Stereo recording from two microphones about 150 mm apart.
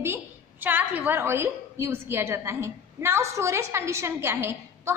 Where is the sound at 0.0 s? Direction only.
15° right (ahead or behind).